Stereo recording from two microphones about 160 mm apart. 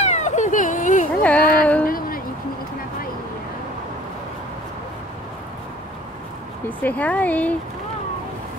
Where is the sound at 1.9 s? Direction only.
65° left (ahead or behind).